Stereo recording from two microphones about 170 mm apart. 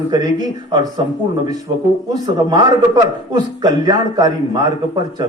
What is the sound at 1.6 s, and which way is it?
A man's voice, 25° right (ahead or behind).